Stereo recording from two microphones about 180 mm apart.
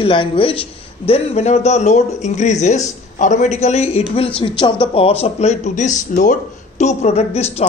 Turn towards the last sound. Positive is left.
turn(degrees=35)  # may be behind; listen again after turning